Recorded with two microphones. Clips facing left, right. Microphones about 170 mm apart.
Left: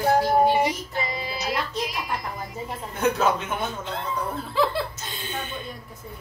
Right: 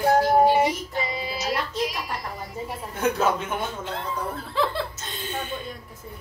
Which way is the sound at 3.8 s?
Centre (ahead or behind).